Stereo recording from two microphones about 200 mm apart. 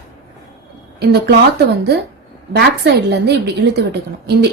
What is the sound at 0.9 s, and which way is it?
Speech, 55° right (ahead or behind).